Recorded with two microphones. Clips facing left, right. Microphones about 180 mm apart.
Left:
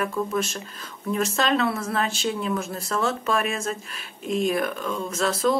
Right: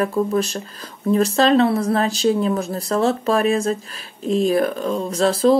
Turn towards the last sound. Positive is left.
turn(degrees=-35)  # may be behind; listen again after turning